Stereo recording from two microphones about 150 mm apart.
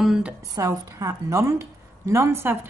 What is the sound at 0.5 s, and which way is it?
A woman's voice, 20° right (ahead or behind).